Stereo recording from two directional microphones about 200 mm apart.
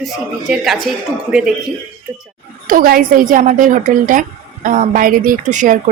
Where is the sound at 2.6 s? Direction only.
45° right (ahead or behind).